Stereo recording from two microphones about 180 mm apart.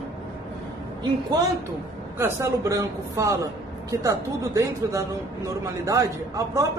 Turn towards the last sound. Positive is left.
turn(degrees=-15)  # may be behind; listen again after turning